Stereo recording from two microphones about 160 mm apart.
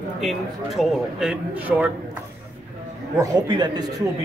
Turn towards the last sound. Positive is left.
turn(degrees=-25)  # may be behind; listen again after turning